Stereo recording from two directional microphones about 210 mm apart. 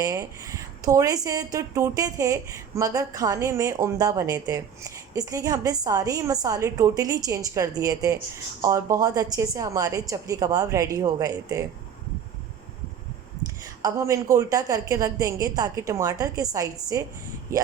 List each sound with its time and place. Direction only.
0.0 s speech: 15° right (ahead or behind)
13.8 s speech: 15° right (ahead or behind)